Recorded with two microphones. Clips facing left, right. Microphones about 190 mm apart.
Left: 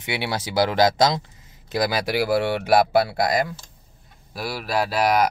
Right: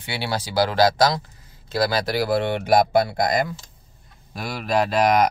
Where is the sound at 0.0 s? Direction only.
20° left (ahead or behind).